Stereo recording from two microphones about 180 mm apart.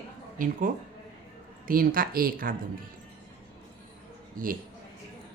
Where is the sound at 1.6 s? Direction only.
50° right (ahead or behind).